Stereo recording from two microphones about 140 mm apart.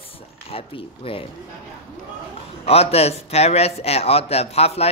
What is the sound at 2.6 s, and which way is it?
Speech, 45° left (ahead or behind).